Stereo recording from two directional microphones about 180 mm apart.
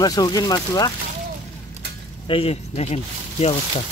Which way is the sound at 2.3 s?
35° left (ahead or behind).